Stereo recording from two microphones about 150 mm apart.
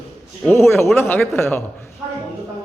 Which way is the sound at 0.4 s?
15° left (ahead or behind).